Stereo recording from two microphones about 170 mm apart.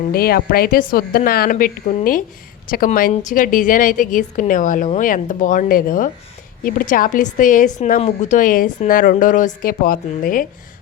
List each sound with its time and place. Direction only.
0.1 s a woman's voice: 60° left (ahead or behind)